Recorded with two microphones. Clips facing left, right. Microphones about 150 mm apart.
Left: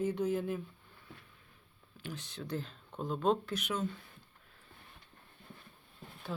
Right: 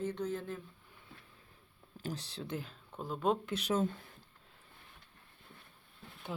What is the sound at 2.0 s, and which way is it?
Speech, 35° right (ahead or behind).